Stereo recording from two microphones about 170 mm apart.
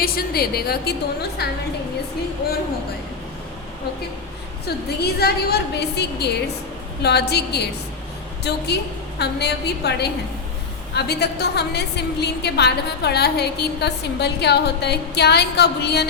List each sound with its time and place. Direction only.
0.0 s a woman's voice: 65° left (ahead or behind)
4.6 s a woman's voice: 70° left (ahead or behind)